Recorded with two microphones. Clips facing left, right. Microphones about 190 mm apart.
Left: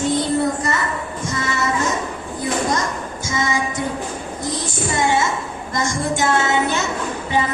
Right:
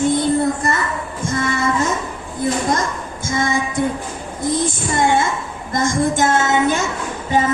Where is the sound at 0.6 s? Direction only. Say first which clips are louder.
Right 2 dB; 55° right (ahead or behind).